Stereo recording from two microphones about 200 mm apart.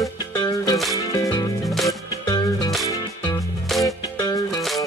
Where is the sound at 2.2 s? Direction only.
20° left (ahead or behind).